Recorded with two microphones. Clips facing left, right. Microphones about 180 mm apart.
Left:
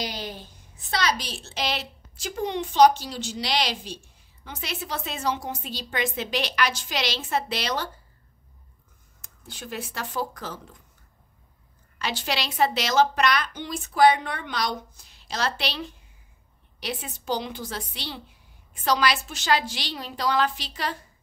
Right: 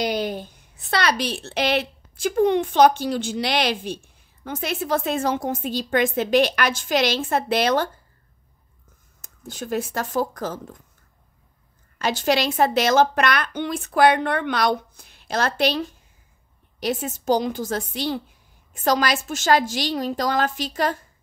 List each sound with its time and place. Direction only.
0.0 s a woman's voice: 60° right (ahead or behind)
9.2 s a woman's voice: 45° right (ahead or behind)
12.0 s a woman's voice: 45° right (ahead or behind)